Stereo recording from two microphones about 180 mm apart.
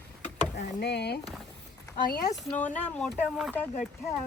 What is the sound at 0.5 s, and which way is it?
Speech, 65° left (ahead or behind).